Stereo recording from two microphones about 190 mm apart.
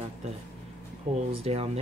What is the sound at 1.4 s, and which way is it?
Speech, 35° right (ahead or behind).